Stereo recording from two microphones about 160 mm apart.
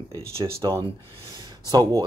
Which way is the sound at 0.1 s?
20° right (ahead or behind).